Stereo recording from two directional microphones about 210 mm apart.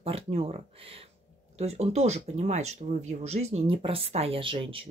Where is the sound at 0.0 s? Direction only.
30° right (ahead or behind).